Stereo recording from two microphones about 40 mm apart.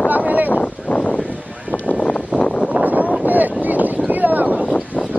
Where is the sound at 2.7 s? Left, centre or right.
Right.